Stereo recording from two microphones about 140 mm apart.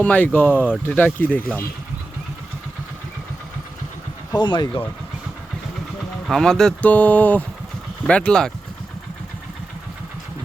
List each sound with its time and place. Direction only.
0.0 s speech: 10° left (ahead or behind)
4.3 s speech: 35° left (ahead or behind)
6.2 s speech: centre (ahead or behind)